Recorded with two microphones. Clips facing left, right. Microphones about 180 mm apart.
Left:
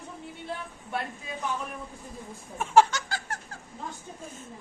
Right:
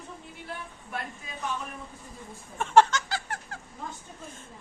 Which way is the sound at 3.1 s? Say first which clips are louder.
Right 2 dB; 45° left (ahead or behind).